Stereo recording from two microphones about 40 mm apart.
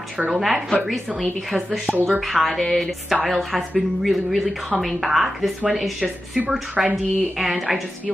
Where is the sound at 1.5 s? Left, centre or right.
Centre.